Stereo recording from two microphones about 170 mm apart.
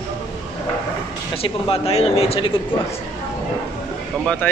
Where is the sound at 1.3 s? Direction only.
35° left (ahead or behind).